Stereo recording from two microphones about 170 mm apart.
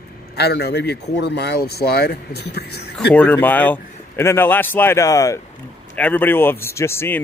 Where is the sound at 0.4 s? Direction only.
75° left (ahead or behind).